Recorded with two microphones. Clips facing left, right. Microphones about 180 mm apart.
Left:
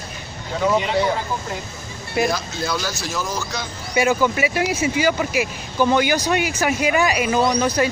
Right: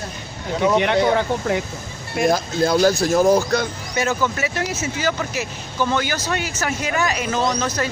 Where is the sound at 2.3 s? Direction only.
50° right (ahead or behind).